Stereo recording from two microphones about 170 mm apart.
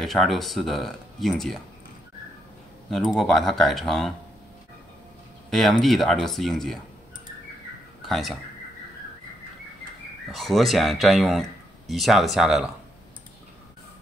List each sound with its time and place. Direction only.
0.0 s speech: centre (ahead or behind)
2.9 s speech: centre (ahead or behind)
5.5 s speech: centre (ahead or behind)
8.0 s speech: centre (ahead or behind)
10.3 s speech: centre (ahead or behind)